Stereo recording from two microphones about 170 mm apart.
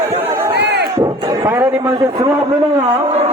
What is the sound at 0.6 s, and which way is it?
Crowd, 80° right.